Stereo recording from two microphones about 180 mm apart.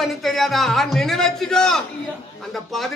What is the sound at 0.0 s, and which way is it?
A man's voice, centre (ahead or behind).